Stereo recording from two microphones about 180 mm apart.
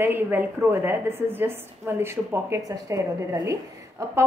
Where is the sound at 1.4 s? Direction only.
15° right (ahead or behind).